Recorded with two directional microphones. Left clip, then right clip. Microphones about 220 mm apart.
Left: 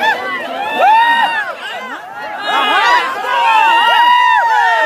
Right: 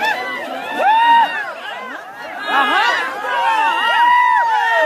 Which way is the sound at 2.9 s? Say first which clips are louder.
Left 5 dB; 40° left (ahead or behind).